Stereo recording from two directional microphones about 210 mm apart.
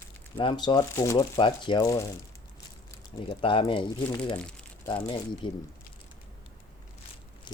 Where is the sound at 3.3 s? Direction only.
25° left (ahead or behind).